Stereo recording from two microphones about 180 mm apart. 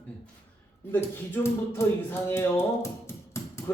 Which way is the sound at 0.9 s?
10° left (ahead or behind).